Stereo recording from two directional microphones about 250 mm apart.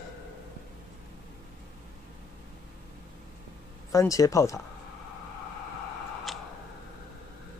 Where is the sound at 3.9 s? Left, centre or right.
Centre.